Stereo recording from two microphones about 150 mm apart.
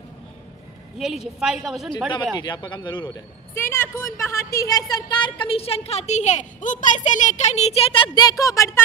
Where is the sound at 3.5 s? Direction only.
15° left (ahead or behind).